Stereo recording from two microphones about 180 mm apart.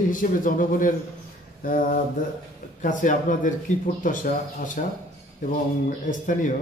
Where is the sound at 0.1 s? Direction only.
50° left (ahead or behind).